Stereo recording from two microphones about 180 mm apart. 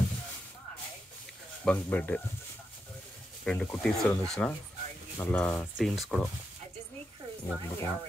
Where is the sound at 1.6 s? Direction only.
10° left (ahead or behind).